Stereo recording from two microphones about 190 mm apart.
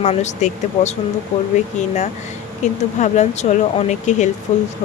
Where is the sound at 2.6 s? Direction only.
40° left (ahead or behind).